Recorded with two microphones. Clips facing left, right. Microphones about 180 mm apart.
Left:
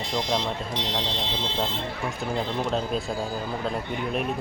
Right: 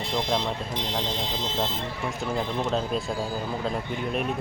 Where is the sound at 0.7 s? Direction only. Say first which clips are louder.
Left 1 dB; 50° right (ahead or behind).